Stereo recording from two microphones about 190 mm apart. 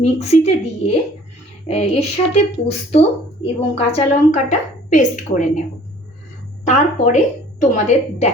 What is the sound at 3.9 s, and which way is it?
Speech, 40° left (ahead or behind).